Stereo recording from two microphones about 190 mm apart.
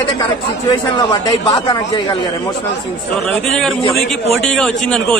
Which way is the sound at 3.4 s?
Centre (ahead or behind).